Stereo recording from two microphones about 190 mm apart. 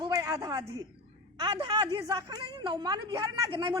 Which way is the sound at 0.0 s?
20° right (ahead or behind).